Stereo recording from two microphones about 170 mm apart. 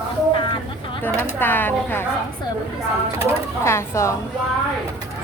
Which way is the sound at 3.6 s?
15° left (ahead or behind).